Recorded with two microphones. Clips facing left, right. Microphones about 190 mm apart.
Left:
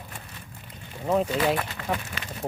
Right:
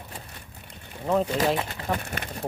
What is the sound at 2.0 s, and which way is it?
Speech, 50° right (ahead or behind).